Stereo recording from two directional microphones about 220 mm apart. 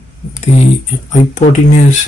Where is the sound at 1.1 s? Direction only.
30° left (ahead or behind).